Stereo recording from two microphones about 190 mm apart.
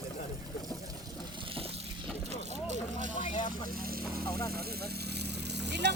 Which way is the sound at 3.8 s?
50° right (ahead or behind).